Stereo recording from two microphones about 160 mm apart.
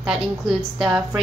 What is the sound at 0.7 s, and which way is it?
Speech, 5° right (ahead or behind).